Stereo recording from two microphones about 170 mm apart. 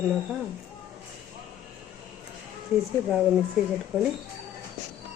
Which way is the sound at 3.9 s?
10° right (ahead or behind).